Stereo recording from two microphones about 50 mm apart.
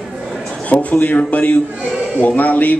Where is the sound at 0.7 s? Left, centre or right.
Left.